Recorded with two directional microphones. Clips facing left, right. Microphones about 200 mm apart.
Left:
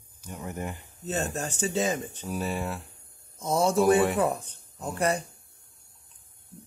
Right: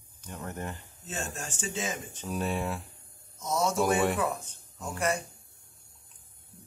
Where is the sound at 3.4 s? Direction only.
30° left (ahead or behind).